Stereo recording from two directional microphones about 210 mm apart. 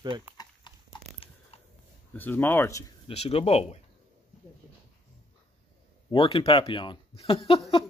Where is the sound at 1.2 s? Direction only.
25° left (ahead or behind).